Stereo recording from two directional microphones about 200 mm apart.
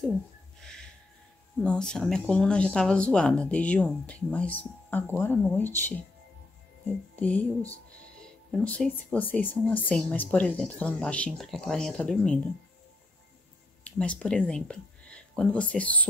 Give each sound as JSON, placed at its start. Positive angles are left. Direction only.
{"t": 0.6, "sound": "music", "side_deg": 5}
{"t": 1.6, "sound": "speech", "side_deg": 5}
{"t": 7.2, "sound": "speech", "side_deg": 5}
{"t": 13.8, "sound": "speech", "side_deg": 5}